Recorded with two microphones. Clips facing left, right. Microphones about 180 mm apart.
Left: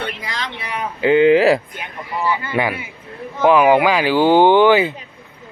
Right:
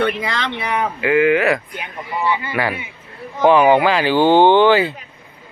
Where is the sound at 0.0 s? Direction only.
60° right (ahead or behind).